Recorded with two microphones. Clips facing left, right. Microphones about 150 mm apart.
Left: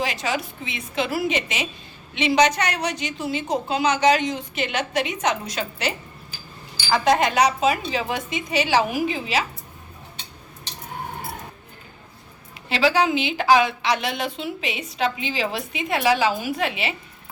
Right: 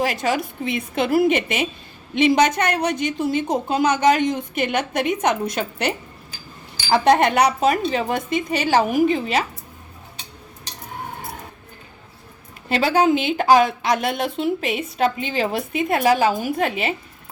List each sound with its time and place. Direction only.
0.0 s a woman's voice: 50° right (ahead or behind)
6.9 s a woman's voice: 60° right (ahead or behind)
12.6 s a woman's voice: 50° right (ahead or behind)